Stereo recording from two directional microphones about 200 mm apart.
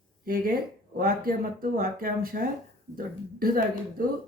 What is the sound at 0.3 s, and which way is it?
Speech, 45° right (ahead or behind).